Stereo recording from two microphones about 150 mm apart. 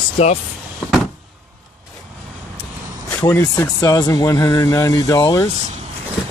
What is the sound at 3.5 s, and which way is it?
Speech, 25° left (ahead or behind).